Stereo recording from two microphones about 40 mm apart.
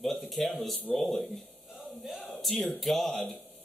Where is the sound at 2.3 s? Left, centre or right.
Centre.